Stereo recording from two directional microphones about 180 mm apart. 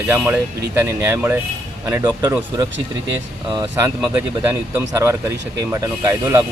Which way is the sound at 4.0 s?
5° right (ahead or behind).